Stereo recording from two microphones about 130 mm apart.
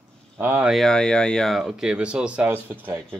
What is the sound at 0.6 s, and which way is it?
Speech, centre (ahead or behind).